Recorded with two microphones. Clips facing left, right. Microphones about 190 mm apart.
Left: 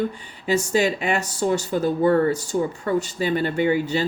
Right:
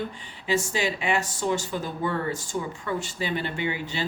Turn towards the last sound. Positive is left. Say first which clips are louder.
# left 9 dB
turn(degrees=40)  # may be behind; listen again after turning